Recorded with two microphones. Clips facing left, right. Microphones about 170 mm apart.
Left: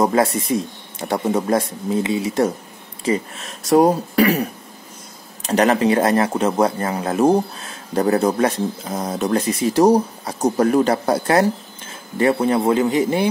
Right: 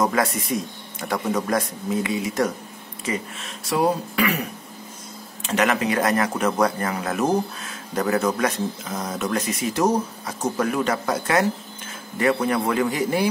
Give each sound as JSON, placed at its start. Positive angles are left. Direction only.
{"t": 0.0, "sound": "speech", "side_deg": 30}
{"t": 3.6, "sound": "speech", "side_deg": 45}